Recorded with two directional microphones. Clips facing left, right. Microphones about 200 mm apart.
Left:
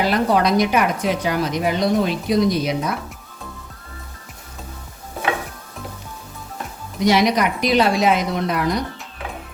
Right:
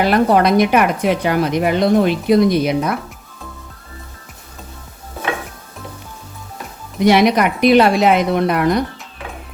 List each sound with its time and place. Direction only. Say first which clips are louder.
0.0 s speech: right 4 dB; 60° right (ahead or behind)
7.0 s speech: right 4 dB; 60° right (ahead or behind)